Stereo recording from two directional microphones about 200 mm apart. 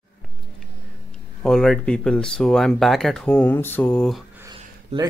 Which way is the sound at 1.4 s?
5° left (ahead or behind).